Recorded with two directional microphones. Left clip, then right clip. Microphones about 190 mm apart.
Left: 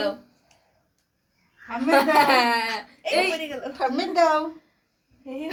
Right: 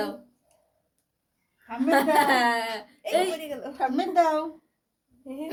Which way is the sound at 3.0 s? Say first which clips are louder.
Left 2 dB; 45° right (ahead or behind).